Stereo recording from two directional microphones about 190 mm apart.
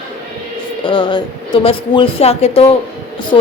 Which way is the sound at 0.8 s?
25° left (ahead or behind).